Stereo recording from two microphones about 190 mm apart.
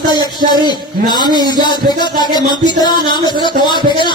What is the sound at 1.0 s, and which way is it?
Music, 20° left (ahead or behind).